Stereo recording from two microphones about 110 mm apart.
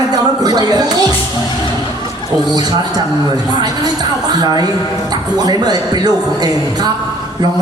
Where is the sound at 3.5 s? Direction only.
40° right (ahead or behind).